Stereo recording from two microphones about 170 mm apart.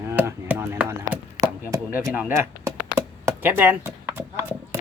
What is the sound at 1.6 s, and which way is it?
Speech, 20° right (ahead or behind).